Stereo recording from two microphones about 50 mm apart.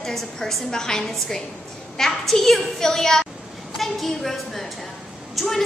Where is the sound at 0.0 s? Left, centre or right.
Centre.